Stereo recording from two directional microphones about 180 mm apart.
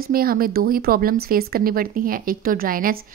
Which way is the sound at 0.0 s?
55° right (ahead or behind).